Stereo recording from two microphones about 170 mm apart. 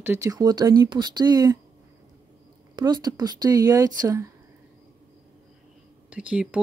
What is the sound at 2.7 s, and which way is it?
Speech, 25° right (ahead or behind).